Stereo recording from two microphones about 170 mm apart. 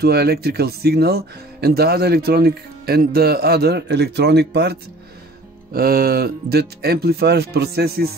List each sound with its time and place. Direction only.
0.0 s speech: 70° right (ahead or behind)
5.7 s speech: 60° right (ahead or behind)